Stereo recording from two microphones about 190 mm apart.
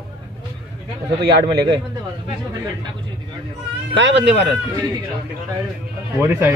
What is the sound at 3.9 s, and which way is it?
Speech, 65° right (ahead or behind).